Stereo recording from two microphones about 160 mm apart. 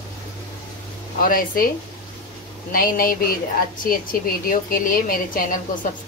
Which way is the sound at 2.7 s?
65° left (ahead or behind).